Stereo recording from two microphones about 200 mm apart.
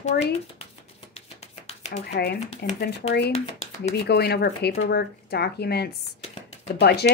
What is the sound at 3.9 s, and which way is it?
A woman's voice, 55° left (ahead or behind).